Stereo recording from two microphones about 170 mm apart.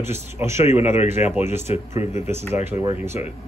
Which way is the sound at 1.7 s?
40° left (ahead or behind).